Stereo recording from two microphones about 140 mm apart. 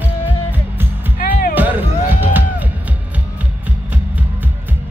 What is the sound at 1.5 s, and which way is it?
Music, 15° right (ahead or behind).